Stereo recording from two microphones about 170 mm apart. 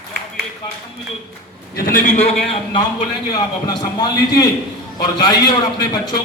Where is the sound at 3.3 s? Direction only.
25° left (ahead or behind).